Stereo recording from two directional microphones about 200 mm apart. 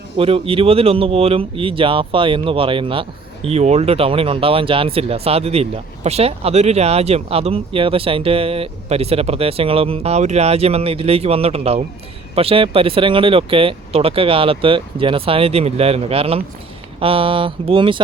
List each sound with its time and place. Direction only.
0.2 s speech: 30° right (ahead or behind)